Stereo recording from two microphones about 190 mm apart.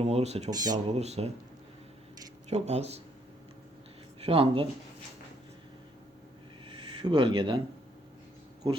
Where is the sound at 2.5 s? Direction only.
35° right (ahead or behind).